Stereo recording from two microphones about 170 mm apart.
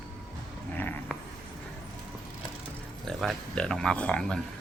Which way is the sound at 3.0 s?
Centre (ahead or behind).